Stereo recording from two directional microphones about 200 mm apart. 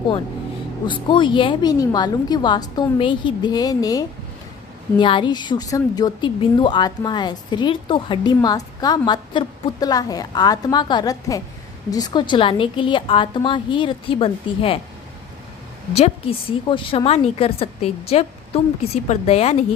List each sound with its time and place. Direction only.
0.9 s a woman's voice: 25° left (ahead or behind)
15.9 s a woman's voice: 30° left (ahead or behind)